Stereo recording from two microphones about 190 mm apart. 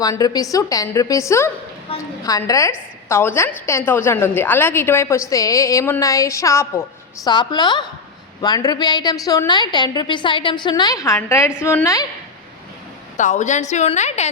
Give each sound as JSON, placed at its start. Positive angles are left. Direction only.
{"t": 0.0, "sound": "a woman's voice", "side_deg": 20}
{"t": 13.1, "sound": "a woman's voice", "side_deg": 40}